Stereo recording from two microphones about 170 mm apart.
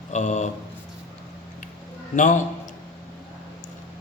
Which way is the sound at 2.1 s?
50° left (ahead or behind).